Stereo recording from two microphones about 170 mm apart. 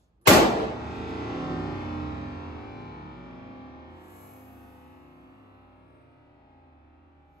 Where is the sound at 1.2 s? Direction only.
65° left (ahead or behind).